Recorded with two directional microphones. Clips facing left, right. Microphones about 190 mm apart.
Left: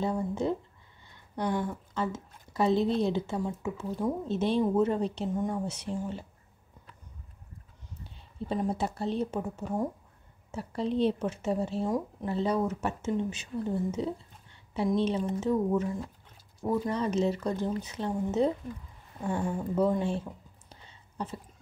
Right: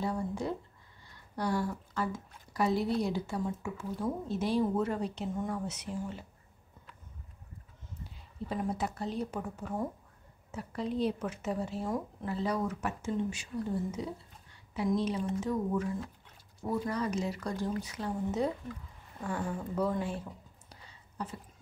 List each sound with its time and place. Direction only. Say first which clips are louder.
0.0 s a woman's voice: left 4 dB; 25° left (ahead or behind)
8.5 s a woman's voice: left 4 dB; 30° left (ahead or behind)
20.8 s a sound: left 3 dB; 25° left (ahead or behind)